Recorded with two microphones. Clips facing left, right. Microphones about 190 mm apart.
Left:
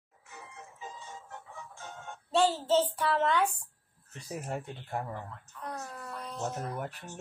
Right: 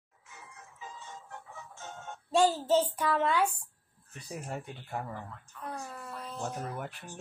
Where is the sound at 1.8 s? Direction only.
20° right (ahead or behind).